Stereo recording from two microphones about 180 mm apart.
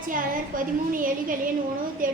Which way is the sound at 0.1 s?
50° right (ahead or behind).